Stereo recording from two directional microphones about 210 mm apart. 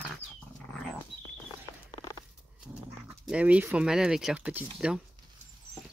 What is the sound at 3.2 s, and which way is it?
Speech, 5° right (ahead or behind).